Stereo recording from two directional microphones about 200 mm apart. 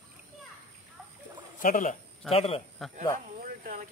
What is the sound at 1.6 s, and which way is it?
Speech, 40° left (ahead or behind).